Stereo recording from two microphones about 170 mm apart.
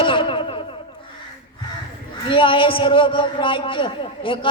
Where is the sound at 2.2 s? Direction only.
30° left (ahead or behind).